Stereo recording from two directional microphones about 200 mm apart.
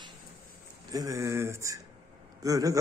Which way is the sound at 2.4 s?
15° right (ahead or behind).